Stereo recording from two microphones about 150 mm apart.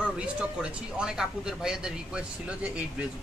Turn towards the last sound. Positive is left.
turn(degrees=-5)  # may be behind; listen again after turning